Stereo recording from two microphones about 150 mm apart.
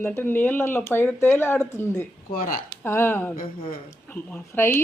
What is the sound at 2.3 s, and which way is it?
Speech, 70° left (ahead or behind).